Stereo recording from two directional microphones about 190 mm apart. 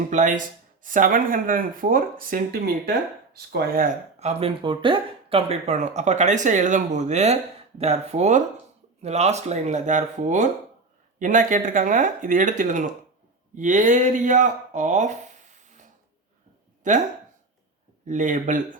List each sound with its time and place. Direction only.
0.1 s speech: 40° right (ahead or behind)
18.0 s speech: 40° right (ahead or behind)